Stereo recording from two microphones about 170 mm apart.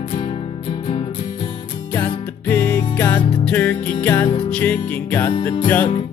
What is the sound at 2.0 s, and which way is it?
Music, 10° left (ahead or behind).